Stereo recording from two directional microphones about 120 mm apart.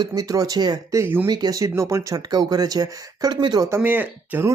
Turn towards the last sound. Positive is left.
turn(degrees=-15)  # may be behind; listen again after turning